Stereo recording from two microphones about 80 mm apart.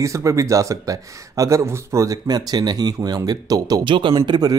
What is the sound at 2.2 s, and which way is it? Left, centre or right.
Speech, right.